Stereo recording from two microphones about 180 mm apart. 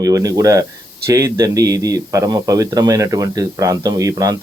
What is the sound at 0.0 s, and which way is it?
Speech, 20° right (ahead or behind).